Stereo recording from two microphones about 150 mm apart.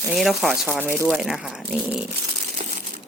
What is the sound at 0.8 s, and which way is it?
Speech, 15° right (ahead or behind).